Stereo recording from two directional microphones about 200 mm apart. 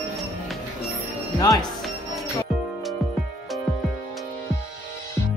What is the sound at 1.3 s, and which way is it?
Speech, 20° left (ahead or behind).